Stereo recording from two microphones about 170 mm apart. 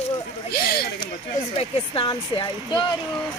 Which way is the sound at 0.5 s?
65° left (ahead or behind).